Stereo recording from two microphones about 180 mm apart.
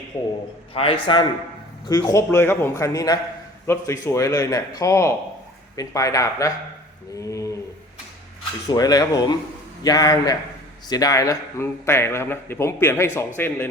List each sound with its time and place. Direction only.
0.7 s speech: 30° left (ahead or behind)
8.7 s speech: 20° left (ahead or behind)